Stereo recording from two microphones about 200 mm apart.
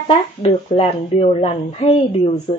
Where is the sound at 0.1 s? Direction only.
30° left (ahead or behind).